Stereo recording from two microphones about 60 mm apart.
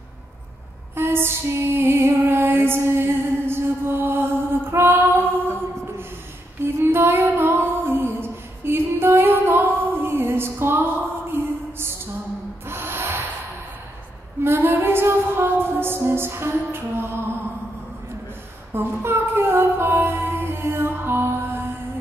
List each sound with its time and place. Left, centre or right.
0.9 s music: right
6.6 s female singing: right
11.3 s a sound: right
12.6 s music: right
14.4 s music: right
18.7 s music: right